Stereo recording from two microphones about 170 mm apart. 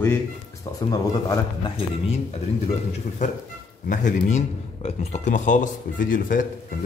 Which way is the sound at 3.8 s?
50° left (ahead or behind).